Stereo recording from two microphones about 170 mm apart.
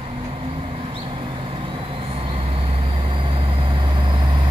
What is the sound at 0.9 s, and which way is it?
Vehicle, 30° right (ahead or behind).